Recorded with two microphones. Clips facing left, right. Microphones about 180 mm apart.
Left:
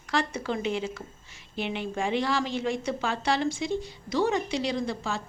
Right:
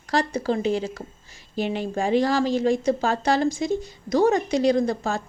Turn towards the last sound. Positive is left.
turn(degrees=-45)  # may be behind; listen again after turning